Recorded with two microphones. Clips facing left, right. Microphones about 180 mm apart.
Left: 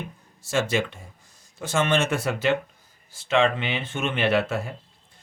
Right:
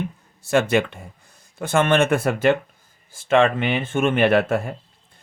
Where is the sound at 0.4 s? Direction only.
60° right (ahead or behind).